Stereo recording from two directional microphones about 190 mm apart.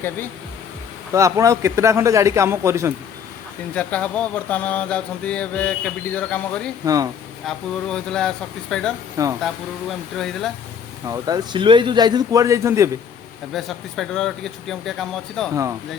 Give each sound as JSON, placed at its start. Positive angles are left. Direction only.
{"t": 1.1, "sound": "a man's voice", "side_deg": -15}
{"t": 3.8, "sound": "a sound", "side_deg": 5}
{"t": 6.8, "sound": "a man's voice", "side_deg": -20}
{"t": 7.4, "sound": "speech", "side_deg": 5}
{"t": 9.2, "sound": "a man's voice", "side_deg": -15}
{"t": 10.2, "sound": "speech", "side_deg": 0}
{"t": 11.0, "sound": "a man's voice", "side_deg": -20}
{"t": 13.5, "sound": "speech", "side_deg": 0}